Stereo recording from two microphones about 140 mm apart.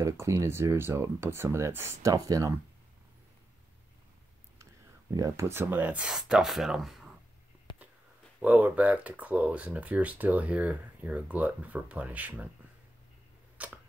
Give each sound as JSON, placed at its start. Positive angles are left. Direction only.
{"t": 0.0, "sound": "speech", "side_deg": -20}
{"t": 5.1, "sound": "speech", "side_deg": -20}
{"t": 8.4, "sound": "speech", "side_deg": -10}
{"t": 13.6, "sound": "a sound", "side_deg": -10}